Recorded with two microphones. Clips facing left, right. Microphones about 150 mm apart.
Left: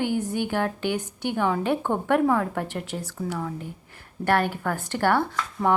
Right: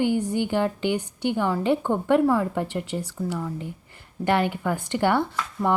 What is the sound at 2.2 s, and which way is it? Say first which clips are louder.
Speech: right 1 dB; 5° right (ahead or behind).